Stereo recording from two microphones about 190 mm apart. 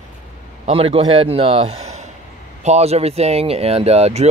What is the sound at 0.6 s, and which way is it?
A man's voice, 30° right (ahead or behind).